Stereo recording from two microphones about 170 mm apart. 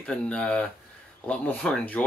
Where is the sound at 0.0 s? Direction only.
5° left (ahead or behind).